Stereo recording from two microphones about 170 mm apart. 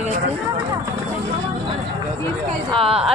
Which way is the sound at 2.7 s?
35° right (ahead or behind).